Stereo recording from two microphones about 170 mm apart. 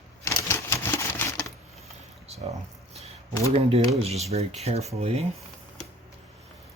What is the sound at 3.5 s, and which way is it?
Speech, 35° right (ahead or behind).